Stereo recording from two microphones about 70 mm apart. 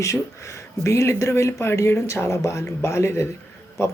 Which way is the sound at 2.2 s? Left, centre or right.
Left.